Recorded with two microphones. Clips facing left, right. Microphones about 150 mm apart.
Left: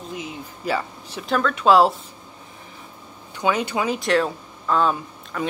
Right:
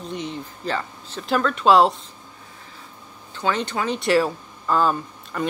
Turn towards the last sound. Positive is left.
turn(degrees=0)  # may be behind; listen again after turning